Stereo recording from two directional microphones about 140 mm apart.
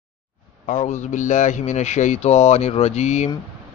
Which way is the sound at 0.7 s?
60° left (ahead or behind).